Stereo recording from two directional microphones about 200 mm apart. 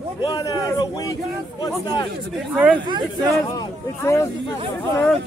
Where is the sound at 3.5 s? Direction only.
15° left (ahead or behind).